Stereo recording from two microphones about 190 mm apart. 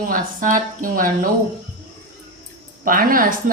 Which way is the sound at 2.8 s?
50° right (ahead or behind).